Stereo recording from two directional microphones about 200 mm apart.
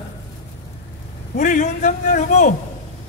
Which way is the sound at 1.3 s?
40° left (ahead or behind).